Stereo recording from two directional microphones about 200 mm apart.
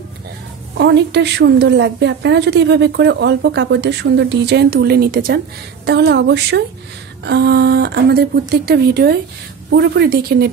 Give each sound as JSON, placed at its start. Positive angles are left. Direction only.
{"t": 0.7, "sound": "a woman's voice", "side_deg": -60}